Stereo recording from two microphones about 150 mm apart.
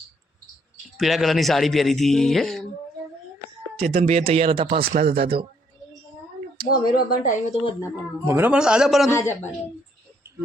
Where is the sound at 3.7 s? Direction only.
45° right (ahead or behind).